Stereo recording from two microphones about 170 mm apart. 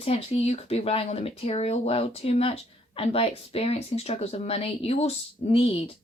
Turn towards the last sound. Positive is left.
turn(degrees=35)  # may be behind; listen again after turning